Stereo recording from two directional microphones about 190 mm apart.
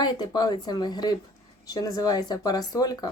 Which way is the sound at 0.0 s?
20° left (ahead or behind).